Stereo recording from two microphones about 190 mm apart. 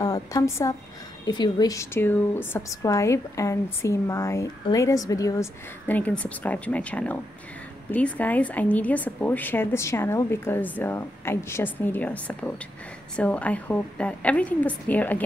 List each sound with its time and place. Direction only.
0.0 s a woman's voice: 15° left (ahead or behind)